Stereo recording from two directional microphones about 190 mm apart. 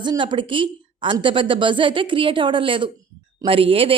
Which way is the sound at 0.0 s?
25° right (ahead or behind).